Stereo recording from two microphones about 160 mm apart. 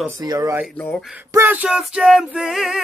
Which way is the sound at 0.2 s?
25° right (ahead or behind).